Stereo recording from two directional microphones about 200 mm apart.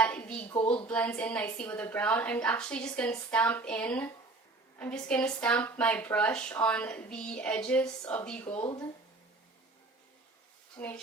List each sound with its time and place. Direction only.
0.0 s a sound: 5° left (ahead or behind)
0.9 s a woman's voice: 5° left (ahead or behind)
8.6 s speech: 20° left (ahead or behind)
10.8 s speech: 10° left (ahead or behind)